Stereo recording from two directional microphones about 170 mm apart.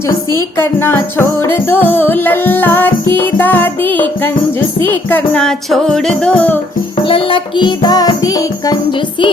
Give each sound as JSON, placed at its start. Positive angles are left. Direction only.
{"t": 0.3, "sound": "music", "side_deg": 15}
{"t": 7.1, "sound": "music", "side_deg": 30}